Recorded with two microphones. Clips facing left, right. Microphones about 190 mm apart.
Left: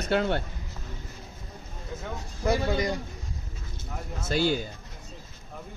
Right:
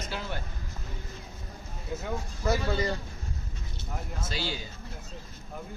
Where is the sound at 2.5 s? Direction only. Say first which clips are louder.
Left 2 dB; 15° left (ahead or behind).